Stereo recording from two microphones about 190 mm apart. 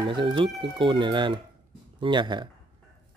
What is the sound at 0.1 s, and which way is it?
Speech, 25° right (ahead or behind).